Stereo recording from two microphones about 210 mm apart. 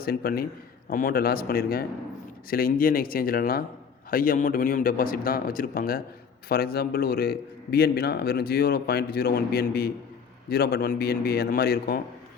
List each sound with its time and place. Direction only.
0.0 s a man's voice: 45° left (ahead or behind)